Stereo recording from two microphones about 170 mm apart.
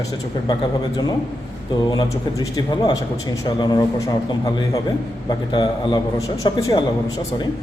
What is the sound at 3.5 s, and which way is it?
Speech, 25° left (ahead or behind).